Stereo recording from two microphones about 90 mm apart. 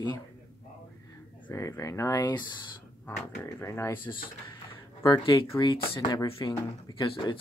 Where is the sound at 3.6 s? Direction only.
30° left (ahead or behind).